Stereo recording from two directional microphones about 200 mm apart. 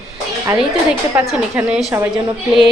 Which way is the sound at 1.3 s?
5° right (ahead or behind).